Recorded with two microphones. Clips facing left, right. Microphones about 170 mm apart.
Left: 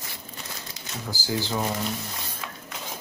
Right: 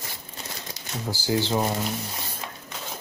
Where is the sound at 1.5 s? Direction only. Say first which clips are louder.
Right 3 dB; 20° right (ahead or behind).